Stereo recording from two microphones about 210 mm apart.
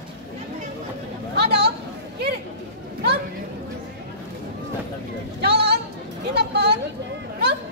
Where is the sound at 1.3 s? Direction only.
50° right (ahead or behind).